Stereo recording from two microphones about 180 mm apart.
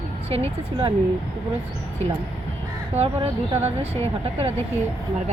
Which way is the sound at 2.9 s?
35° right (ahead or behind).